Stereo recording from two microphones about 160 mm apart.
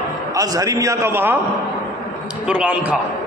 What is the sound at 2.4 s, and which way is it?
Speech, 5° right (ahead or behind).